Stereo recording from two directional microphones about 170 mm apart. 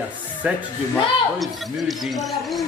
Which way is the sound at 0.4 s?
5° right (ahead or behind).